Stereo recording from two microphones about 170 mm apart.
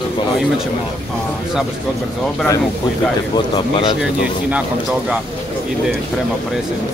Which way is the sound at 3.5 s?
30° left (ahead or behind).